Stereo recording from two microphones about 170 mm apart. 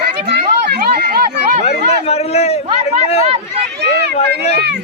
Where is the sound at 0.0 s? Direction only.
75° right (ahead or behind).